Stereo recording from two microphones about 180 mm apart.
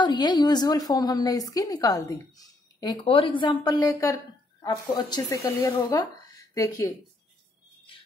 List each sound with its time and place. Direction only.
0.0 s a woman's voice: 25° left (ahead or behind)